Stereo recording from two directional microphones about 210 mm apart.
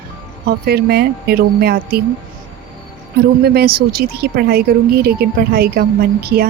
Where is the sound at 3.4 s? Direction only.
50° right (ahead or behind).